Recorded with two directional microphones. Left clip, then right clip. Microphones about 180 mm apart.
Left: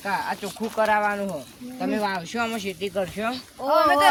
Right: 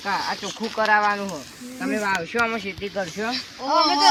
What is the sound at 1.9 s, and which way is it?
Speech, 90° left.